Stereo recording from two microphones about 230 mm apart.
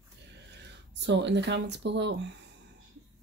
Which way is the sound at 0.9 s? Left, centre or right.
Right.